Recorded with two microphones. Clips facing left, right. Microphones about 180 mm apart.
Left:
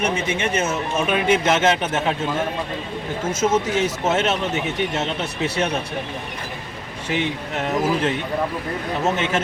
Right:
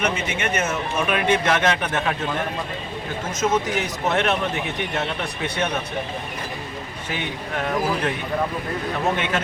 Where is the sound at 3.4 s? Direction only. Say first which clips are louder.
Left 2 dB; 25° left (ahead or behind).